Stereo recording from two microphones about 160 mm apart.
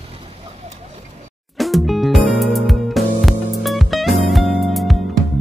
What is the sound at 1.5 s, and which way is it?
Music, centre (ahead or behind).